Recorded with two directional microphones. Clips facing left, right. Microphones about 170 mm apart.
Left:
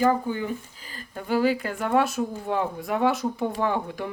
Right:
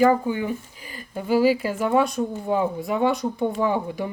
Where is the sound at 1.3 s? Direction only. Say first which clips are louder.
Right 4 dB; 5° right (ahead or behind).